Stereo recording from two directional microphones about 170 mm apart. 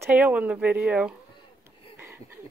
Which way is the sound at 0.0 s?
10° right (ahead or behind).